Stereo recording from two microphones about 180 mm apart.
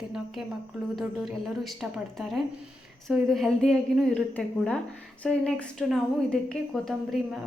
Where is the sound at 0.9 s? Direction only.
Centre (ahead or behind).